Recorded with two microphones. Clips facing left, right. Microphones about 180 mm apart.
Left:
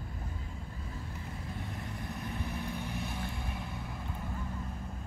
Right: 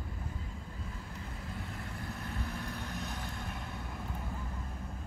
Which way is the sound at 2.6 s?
10° left (ahead or behind).